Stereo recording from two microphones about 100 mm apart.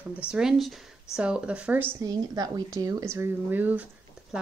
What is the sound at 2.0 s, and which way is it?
A woman's voice, 40° right (ahead or behind).